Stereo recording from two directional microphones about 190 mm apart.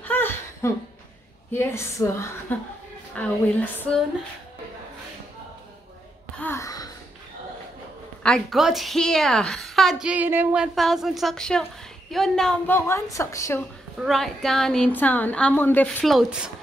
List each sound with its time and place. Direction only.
0.0 s a sound: 10° left (ahead or behind)
1.5 s a woman's voice: 10° left (ahead or behind)
6.4 s gasp: 15° left (ahead or behind)
8.2 s a woman's voice: centre (ahead or behind)
13.9 s a woman's voice: centre (ahead or behind)